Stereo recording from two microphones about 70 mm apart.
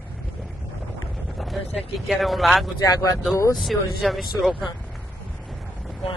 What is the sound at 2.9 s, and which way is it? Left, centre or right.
Speech, left.